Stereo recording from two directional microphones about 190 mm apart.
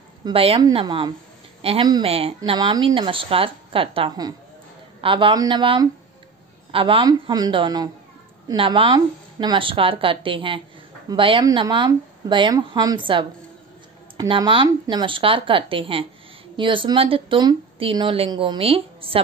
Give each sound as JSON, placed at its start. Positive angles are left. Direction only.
{"t": 0.2, "sound": "speech", "side_deg": -30}